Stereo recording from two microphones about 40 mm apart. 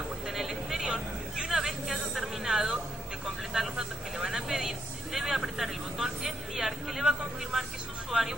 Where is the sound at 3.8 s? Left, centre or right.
Centre.